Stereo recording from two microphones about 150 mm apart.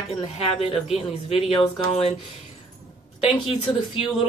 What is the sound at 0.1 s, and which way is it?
Speech, 40° left (ahead or behind).